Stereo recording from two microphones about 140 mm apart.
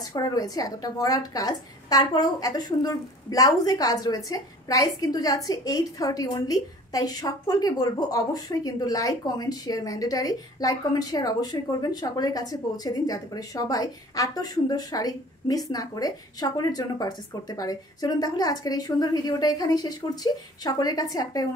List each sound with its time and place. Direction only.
0.1 s a woman's voice: 25° left (ahead or behind)